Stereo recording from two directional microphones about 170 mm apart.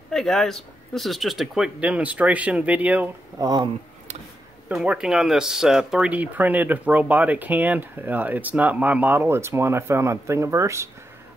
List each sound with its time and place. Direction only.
0.1 s speech: centre (ahead or behind)
3.3 s speech: 25° right (ahead or behind)
4.6 s speech: 5° right (ahead or behind)